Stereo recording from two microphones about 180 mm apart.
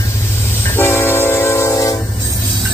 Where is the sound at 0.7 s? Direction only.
15° left (ahead or behind).